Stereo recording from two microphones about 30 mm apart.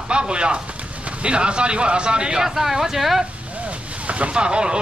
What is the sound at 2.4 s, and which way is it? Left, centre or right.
Speech, centre.